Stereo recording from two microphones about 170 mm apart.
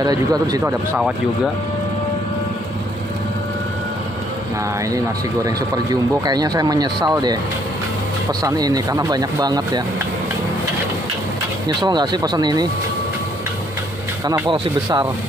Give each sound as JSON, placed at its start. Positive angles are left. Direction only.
{"t": 0.0, "sound": "speech", "side_deg": -20}
{"t": 4.9, "sound": "speech", "side_deg": -20}
{"t": 11.6, "sound": "speech", "side_deg": -25}
{"t": 14.2, "sound": "speech", "side_deg": -20}